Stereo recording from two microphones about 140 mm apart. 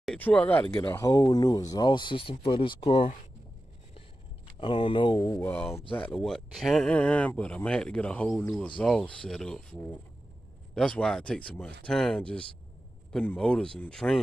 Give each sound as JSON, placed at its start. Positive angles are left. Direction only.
{"t": 0.0, "sound": "speech", "side_deg": 5}
{"t": 0.7, "sound": "speech", "side_deg": 40}
{"t": 0.9, "sound": "speech", "side_deg": 25}
{"t": 4.6, "sound": "speech", "side_deg": 40}
{"t": 5.5, "sound": "speech", "side_deg": 15}